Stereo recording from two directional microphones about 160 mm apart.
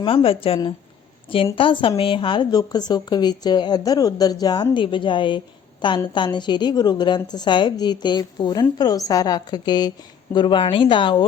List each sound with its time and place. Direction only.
0.0 s speech: 35° left (ahead or behind)